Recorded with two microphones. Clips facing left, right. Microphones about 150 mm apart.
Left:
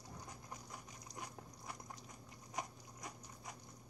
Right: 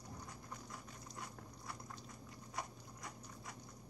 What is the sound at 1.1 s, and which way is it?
Dog, 15° left (ahead or behind).